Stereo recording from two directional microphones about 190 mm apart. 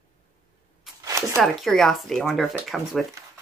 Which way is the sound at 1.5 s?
Centre (ahead or behind).